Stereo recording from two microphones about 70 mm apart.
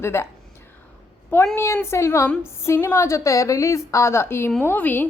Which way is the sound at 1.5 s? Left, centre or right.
Left.